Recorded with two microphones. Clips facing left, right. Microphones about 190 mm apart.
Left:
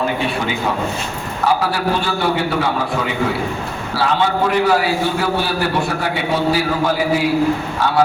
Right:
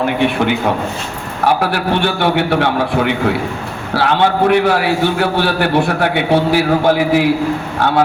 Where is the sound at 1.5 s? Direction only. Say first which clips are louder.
Right 3 dB; 65° right (ahead or behind).